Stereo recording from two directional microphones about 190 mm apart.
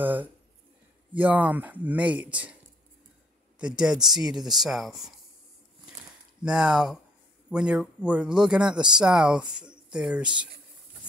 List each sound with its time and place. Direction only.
0.0 s speech: 10° right (ahead or behind)
3.5 s speech: 5° right (ahead or behind)
6.4 s speech: 5° right (ahead or behind)